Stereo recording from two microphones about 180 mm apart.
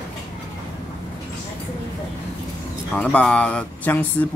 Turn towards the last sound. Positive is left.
turn(degrees=10)  # may be behind; listen again after turning